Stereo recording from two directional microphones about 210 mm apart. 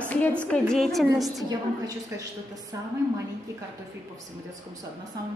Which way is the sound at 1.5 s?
15° right (ahead or behind).